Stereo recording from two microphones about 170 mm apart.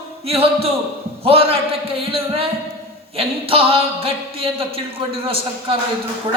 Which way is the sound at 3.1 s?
35° right (ahead or behind).